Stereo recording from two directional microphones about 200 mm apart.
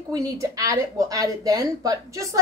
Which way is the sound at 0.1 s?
15° right (ahead or behind).